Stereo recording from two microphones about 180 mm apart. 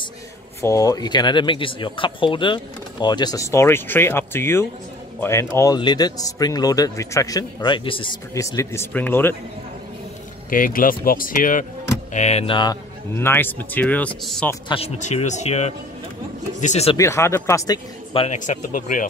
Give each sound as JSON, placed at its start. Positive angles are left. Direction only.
{"t": 0.6, "sound": "speech", "side_deg": 15}
{"t": 8.4, "sound": "speech", "side_deg": 15}
{"t": 10.5, "sound": "speech", "side_deg": 50}
{"t": 13.1, "sound": "speech", "side_deg": 15}
{"t": 14.7, "sound": "speech", "side_deg": 35}
{"t": 16.9, "sound": "speech", "side_deg": 15}
{"t": 18.1, "sound": "speech", "side_deg": 35}